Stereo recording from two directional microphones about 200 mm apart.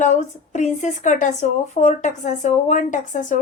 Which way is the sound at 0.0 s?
35° left (ahead or behind).